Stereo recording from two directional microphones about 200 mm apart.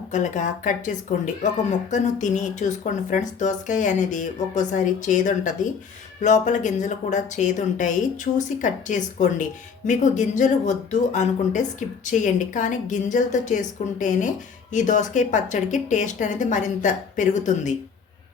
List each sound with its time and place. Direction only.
0.1 s speech: 40° left (ahead or behind)